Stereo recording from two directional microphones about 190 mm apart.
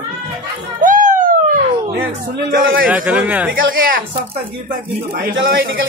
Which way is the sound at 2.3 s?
50° right (ahead or behind).